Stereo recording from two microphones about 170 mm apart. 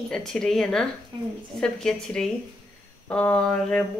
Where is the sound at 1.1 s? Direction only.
30° right (ahead or behind).